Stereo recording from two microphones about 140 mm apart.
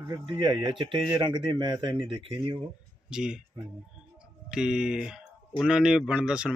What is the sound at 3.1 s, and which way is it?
Speech, 5° right (ahead or behind).